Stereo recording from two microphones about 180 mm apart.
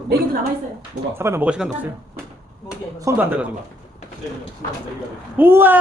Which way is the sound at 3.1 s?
10° right (ahead or behind).